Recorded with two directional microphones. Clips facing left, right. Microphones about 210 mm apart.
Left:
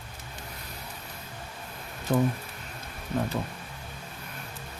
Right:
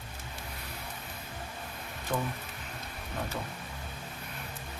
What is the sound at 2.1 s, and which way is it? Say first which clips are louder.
Speech: left 8 dB; 35° left (ahead or behind).